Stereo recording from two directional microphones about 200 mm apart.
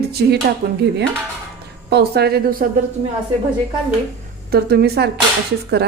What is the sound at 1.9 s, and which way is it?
Speech, 55° right (ahead or behind).